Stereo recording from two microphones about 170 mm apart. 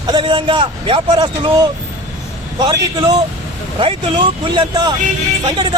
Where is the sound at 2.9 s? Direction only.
25° right (ahead or behind).